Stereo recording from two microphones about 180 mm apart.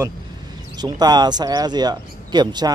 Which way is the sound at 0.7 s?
25° right (ahead or behind).